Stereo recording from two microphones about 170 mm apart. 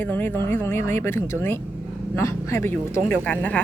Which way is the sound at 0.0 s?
10° left (ahead or behind).